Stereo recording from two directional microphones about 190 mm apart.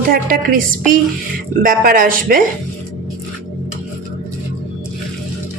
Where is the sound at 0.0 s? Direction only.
50° right (ahead or behind).